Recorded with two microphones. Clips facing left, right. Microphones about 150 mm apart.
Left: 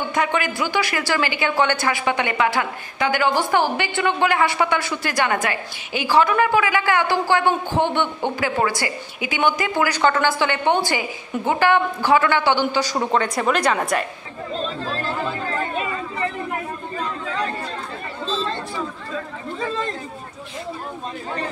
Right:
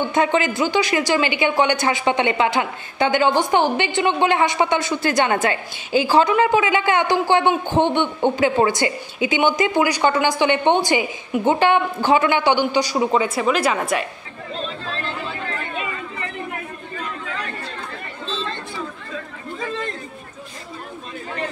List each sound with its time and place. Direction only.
0.1 s a woman's voice: 25° right (ahead or behind); by 14.0 s 5° right (ahead or behind)
14.9 s chatter: 35° left (ahead or behind)
17.0 s chatter: 30° left (ahead or behind)